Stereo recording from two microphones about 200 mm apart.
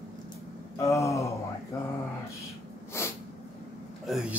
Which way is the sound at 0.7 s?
15° left (ahead or behind).